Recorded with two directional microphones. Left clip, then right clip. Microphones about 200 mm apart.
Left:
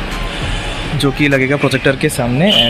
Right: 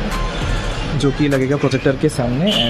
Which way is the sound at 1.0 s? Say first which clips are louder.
Left 4 dB; centre (ahead or behind).